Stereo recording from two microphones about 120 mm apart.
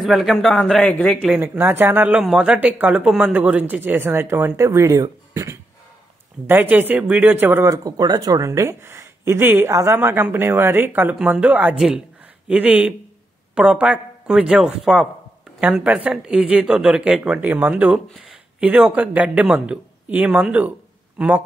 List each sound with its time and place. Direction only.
0.0 s a man's voice: centre (ahead or behind)
1.5 s speech: 15° right (ahead or behind)
6.4 s speech: 15° right (ahead or behind)
7.6 s speech: 30° right (ahead or behind); by 20.7 s 10° right (ahead or behind)